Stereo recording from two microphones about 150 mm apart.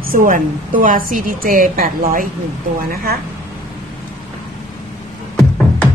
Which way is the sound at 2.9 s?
80° right.